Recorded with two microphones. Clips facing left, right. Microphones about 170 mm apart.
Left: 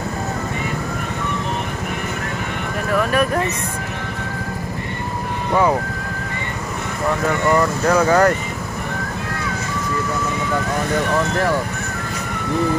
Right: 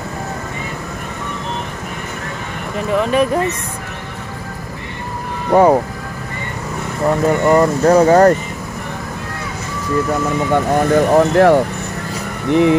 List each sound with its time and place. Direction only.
2.9 s speech: 20° right (ahead or behind)
5.5 s speech: 40° right (ahead or behind)
7.2 s speech: 30° right (ahead or behind)
11.0 s speech: 45° right (ahead or behind)
11.3 s speech: 70° right (ahead or behind)